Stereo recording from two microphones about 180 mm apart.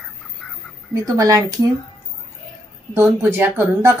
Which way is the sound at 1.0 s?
20° right (ahead or behind).